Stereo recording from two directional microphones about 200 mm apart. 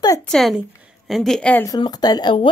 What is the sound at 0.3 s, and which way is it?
A woman's voice, centre (ahead or behind).